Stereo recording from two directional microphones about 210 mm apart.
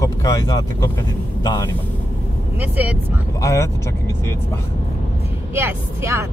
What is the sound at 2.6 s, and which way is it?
Speech, 5° right (ahead or behind).